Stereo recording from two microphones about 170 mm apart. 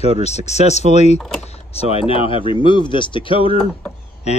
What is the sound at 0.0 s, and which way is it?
Speech, 40° left (ahead or behind).